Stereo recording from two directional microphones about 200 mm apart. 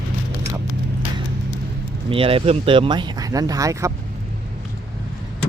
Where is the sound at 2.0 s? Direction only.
25° right (ahead or behind).